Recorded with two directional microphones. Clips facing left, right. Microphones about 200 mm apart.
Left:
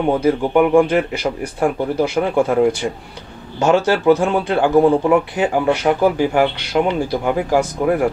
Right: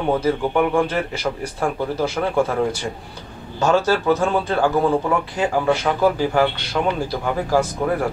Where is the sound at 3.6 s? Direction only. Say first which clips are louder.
Left 3 dB; 15° left (ahead or behind).